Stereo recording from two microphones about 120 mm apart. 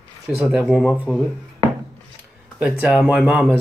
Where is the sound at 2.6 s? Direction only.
5° right (ahead or behind).